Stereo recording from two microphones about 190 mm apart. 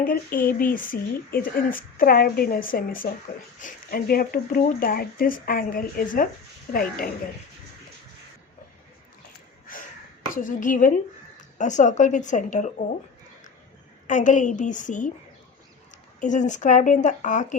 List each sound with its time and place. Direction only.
0.0 s speech: 50° left (ahead or behind)
9.7 s a sound: 45° left (ahead or behind)
10.3 s speech: 45° left (ahead or behind)
14.1 s speech: 40° left (ahead or behind)
16.2 s speech: 40° left (ahead or behind)